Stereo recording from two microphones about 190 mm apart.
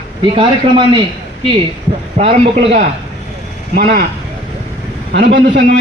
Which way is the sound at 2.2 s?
40° right (ahead or behind).